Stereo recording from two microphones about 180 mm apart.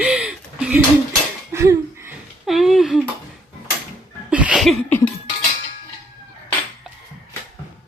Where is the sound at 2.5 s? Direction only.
Centre (ahead or behind).